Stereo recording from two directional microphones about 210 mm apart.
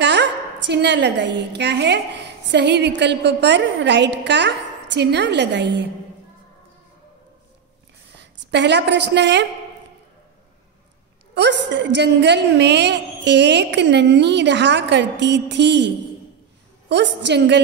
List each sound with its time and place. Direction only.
0.0 s a woman's voice: 55° right (ahead or behind)
8.2 s a woman's voice: 55° right (ahead or behind)
11.3 s a woman's voice: 55° right (ahead or behind)
16.9 s a woman's voice: 55° right (ahead or behind)